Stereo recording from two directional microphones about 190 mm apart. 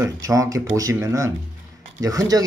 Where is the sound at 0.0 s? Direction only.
15° right (ahead or behind).